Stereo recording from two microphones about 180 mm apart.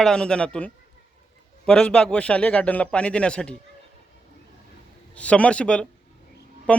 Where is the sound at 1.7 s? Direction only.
5° left (ahead or behind).